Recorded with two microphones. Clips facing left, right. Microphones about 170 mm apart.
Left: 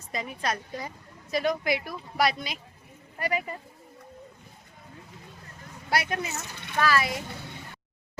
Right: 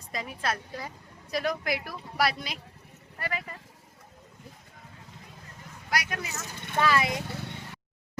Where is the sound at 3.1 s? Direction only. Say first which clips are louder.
Left 5 dB; 15° left (ahead or behind).